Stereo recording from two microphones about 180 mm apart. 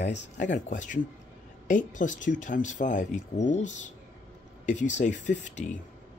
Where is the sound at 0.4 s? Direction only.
45° left (ahead or behind).